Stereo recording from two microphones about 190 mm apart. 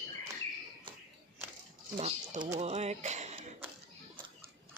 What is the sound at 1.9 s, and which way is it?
Speech, 35° right (ahead or behind).